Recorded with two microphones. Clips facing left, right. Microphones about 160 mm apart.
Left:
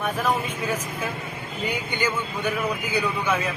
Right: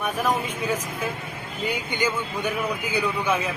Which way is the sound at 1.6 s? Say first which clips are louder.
Right 1 dB; 10° right (ahead or behind).